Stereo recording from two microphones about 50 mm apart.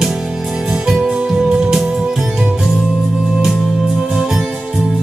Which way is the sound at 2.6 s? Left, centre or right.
Centre.